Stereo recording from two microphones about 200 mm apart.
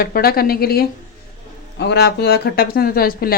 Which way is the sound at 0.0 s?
50° left (ahead or behind).